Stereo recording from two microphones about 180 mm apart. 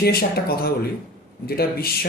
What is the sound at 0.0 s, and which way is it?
Speech, 60° left (ahead or behind).